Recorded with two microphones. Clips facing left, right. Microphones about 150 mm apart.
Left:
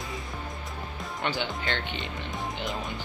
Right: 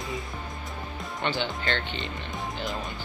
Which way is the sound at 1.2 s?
5° left (ahead or behind).